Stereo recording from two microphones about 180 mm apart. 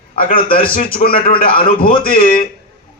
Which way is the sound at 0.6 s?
55° left (ahead or behind).